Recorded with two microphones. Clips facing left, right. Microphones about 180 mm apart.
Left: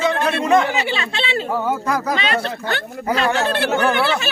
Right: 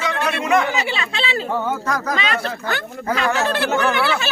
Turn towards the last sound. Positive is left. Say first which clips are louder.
# left 1 dB
turn(degrees=30)  # may be behind; listen again after turning